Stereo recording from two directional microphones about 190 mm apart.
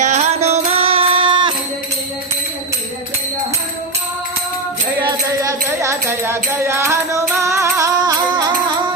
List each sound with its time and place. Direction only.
0.0 s music: 35° right (ahead or behind)
5.0 s music: 15° right (ahead or behind)